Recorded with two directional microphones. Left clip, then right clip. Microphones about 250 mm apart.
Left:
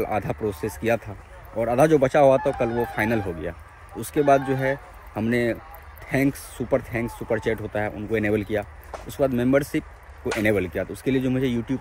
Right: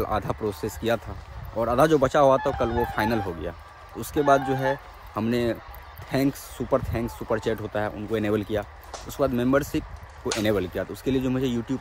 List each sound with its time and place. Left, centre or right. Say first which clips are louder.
0.0 s speech: left 1 dB; centre